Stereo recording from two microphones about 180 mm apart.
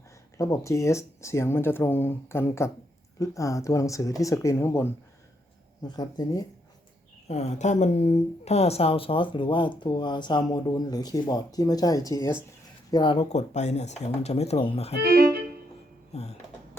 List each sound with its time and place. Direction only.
0.3 s speech: 15° left (ahead or behind)
6.0 s speech: 20° left (ahead or behind)
7.3 s speech: 35° left (ahead or behind)
13.3 s speech: 40° left (ahead or behind)
15.0 s speech: 60° right (ahead or behind)
16.1 s speech: 35° left (ahead or behind)